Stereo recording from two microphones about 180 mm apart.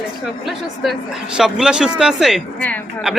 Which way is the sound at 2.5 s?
10° left (ahead or behind).